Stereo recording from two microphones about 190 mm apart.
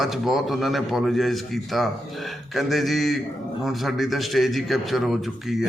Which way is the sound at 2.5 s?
Centre (ahead or behind).